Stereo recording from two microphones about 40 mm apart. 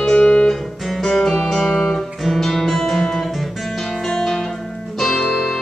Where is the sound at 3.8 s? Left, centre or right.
Centre.